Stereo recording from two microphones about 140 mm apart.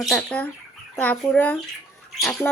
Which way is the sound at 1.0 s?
10° left (ahead or behind).